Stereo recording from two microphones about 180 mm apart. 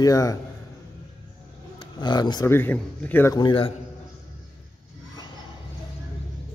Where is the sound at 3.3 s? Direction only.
30° left (ahead or behind).